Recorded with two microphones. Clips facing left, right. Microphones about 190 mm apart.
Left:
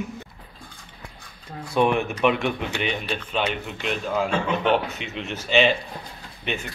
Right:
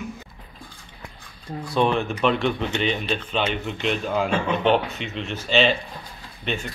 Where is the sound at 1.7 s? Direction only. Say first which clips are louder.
Left 1 dB; 15° left (ahead or behind).